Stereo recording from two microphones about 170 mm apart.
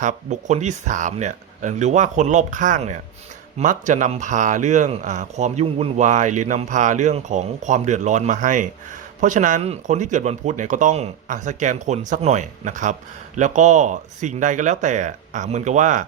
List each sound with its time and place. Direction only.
0.0 s speech: 45° right (ahead or behind)